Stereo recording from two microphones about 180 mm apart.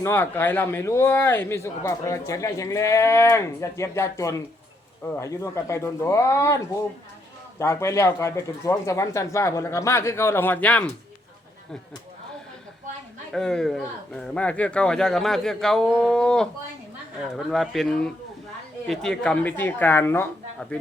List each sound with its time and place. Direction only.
0.0 s speech: 15° left (ahead or behind)
7.6 s speech: 15° left (ahead or behind)
13.3 s speech: centre (ahead or behind)